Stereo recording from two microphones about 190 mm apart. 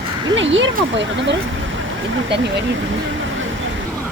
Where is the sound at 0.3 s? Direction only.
80° right.